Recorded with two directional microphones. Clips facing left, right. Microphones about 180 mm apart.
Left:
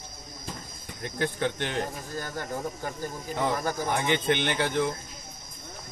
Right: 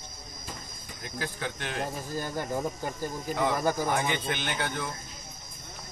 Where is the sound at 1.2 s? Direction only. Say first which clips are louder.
Left 7 dB; 25° left (ahead or behind).